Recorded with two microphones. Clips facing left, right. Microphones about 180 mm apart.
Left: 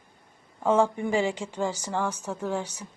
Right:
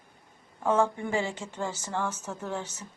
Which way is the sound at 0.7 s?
15° left (ahead or behind).